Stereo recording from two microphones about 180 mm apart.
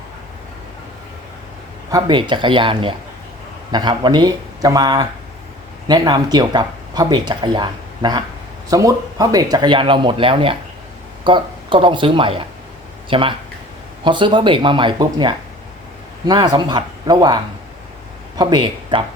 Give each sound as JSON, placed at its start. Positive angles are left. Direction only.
{"t": 1.9, "sound": "speech", "side_deg": -25}